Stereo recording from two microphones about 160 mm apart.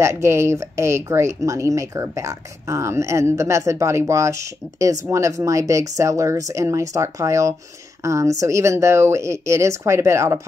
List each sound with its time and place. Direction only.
0.0 s speech: 15° right (ahead or behind)